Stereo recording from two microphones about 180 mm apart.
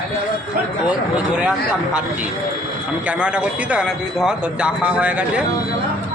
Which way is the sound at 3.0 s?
5° right (ahead or behind).